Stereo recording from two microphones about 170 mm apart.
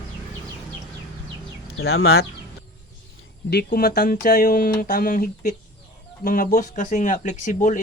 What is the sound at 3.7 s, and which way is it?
Speech, 60° left (ahead or behind).